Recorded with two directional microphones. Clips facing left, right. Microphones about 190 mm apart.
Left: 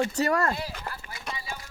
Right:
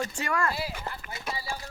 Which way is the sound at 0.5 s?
10° right (ahead or behind).